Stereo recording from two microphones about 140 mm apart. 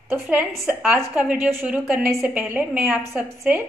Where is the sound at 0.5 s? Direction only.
Centre (ahead or behind).